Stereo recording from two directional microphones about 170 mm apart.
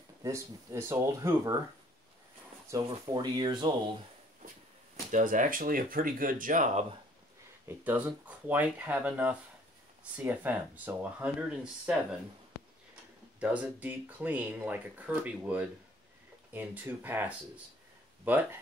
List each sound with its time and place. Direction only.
0.2 s speech: 15° right (ahead or behind)
2.7 s speech: 25° right (ahead or behind)
5.1 s speech: 50° right (ahead or behind)
7.6 s speech: 10° right (ahead or behind)
13.4 s speech: 10° right (ahead or behind)